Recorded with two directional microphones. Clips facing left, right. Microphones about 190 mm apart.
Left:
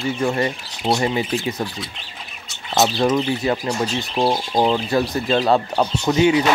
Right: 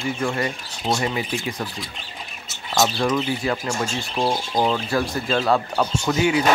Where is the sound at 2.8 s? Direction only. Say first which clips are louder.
Left 3 dB; 25° left (ahead or behind).